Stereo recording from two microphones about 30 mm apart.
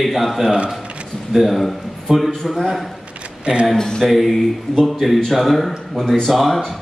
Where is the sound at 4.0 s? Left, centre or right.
Centre.